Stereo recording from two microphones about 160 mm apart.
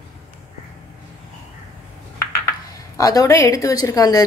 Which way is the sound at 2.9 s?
20° left (ahead or behind).